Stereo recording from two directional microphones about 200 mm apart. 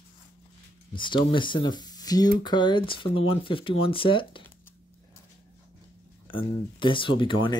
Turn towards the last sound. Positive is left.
turn(degrees=25)  # may be behind; listen again after turning